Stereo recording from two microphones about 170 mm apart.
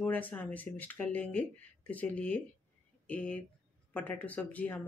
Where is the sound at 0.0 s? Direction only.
10° left (ahead or behind).